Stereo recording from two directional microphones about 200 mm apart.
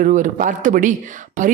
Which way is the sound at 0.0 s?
40° right (ahead or behind).